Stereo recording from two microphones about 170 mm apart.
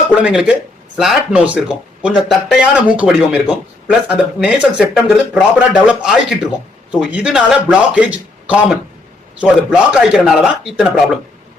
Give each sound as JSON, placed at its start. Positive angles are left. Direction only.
{"t": 0.2, "sound": "speech", "side_deg": -5}